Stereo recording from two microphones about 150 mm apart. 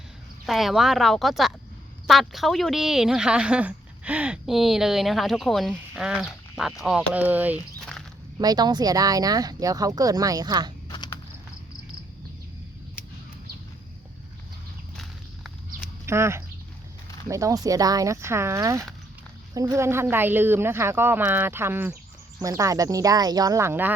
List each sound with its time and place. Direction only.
0.4 s a woman's voice: centre (ahead or behind)
8.4 s speech: 25° right (ahead or behind)
10.8 s a sound: 30° left (ahead or behind)
16.0 s speech: 15° right (ahead or behind)